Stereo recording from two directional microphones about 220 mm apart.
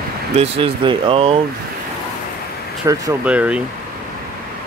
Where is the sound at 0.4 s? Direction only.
25° right (ahead or behind).